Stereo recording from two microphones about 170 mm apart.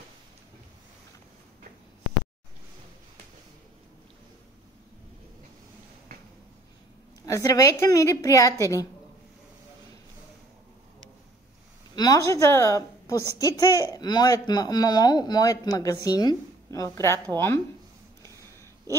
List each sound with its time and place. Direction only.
7.2 s speech: 20° left (ahead or behind)
11.9 s a woman's voice: 20° left (ahead or behind)